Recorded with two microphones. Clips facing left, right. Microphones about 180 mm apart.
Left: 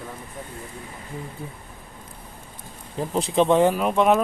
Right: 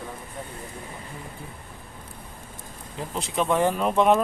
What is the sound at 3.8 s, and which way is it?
Speech, centre (ahead or behind).